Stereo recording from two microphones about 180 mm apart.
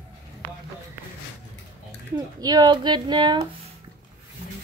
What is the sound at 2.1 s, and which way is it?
A child's voice, 20° right (ahead or behind).